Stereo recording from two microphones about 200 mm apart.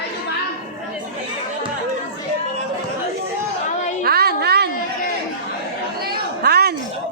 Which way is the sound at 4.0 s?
50° right (ahead or behind).